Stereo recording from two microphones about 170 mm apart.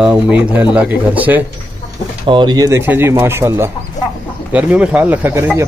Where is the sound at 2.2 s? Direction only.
30° right (ahead or behind).